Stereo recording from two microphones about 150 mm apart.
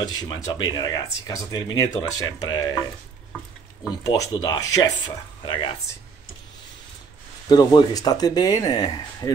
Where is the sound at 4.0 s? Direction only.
25° left (ahead or behind).